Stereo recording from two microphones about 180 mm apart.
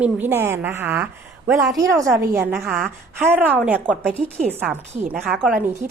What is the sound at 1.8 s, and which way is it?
A woman's voice, 15° right (ahead or behind).